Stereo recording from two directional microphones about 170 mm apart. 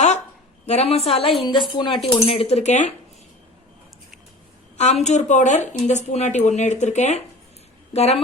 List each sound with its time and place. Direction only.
0.6 s a woman's voice: 40° left (ahead or behind)
4.8 s speech: 40° left (ahead or behind)